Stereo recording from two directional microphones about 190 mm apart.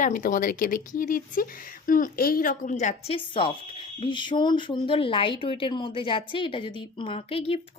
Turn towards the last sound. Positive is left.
turn(degrees=30)  # may be behind; listen again after turning